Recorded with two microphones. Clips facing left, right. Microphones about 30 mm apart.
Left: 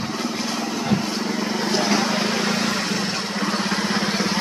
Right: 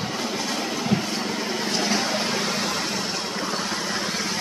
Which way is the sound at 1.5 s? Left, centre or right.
Centre.